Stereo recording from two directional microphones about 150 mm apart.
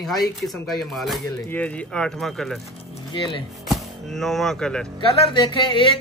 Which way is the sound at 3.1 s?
35° left (ahead or behind).